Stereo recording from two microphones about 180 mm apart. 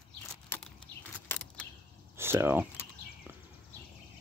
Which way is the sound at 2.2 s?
15° right (ahead or behind).